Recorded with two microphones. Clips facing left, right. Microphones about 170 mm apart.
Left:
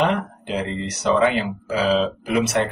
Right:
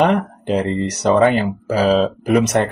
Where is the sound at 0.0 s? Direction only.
45° right (ahead or behind).